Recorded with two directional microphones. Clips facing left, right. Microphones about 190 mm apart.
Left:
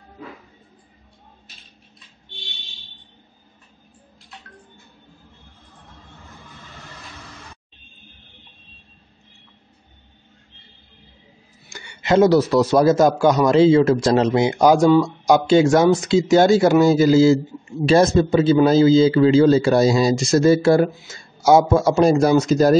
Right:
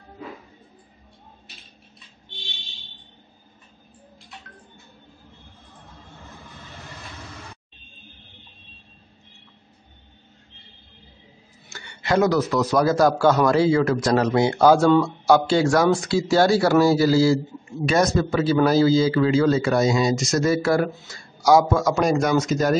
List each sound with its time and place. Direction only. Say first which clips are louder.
11.7 s a man's voice: left 4 dB; 15° left (ahead or behind); by 22.8 s 35° left (ahead or behind)